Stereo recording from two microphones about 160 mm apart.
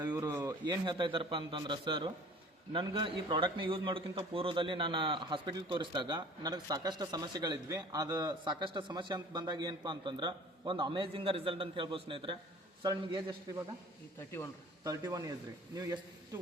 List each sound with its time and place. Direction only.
0.0 s a man's voice: 25° right (ahead or behind)
14.8 s a man's voice: 20° right (ahead or behind)